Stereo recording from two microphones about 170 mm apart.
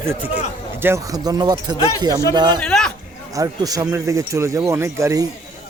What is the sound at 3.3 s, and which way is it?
A man's voice, 20° right (ahead or behind).